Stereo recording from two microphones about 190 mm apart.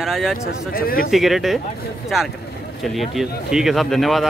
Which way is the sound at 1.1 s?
Centre (ahead or behind).